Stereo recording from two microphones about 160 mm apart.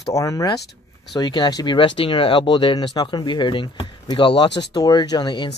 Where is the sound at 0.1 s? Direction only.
20° left (ahead or behind).